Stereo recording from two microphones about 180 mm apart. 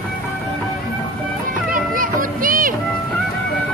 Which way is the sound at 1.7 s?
50° right (ahead or behind).